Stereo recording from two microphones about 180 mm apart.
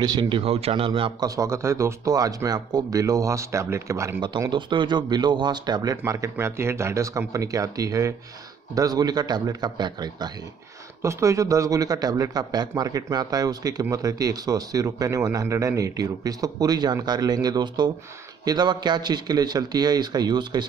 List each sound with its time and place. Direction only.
0.0 s speech: 25° right (ahead or behind)
1.3 s speech: 15° right (ahead or behind)